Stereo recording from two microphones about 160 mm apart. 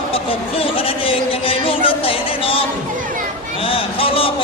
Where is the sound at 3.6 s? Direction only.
35° left (ahead or behind).